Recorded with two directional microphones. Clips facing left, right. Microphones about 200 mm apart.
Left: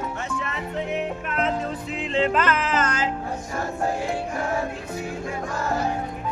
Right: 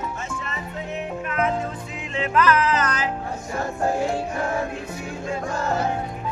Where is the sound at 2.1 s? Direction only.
25° left (ahead or behind).